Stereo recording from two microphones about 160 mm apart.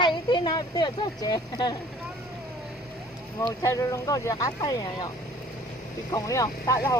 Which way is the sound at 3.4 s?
20° left (ahead or behind).